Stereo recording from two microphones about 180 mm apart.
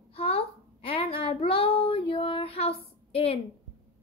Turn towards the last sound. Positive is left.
turn(degrees=35)  # may be behind; listen again after turning